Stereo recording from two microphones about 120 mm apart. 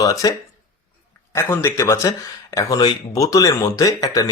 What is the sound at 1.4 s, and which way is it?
Speech, 25° left (ahead or behind).